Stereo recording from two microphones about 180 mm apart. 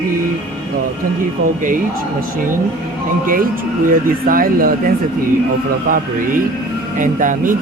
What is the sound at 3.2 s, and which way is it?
Speech, 50° right (ahead or behind).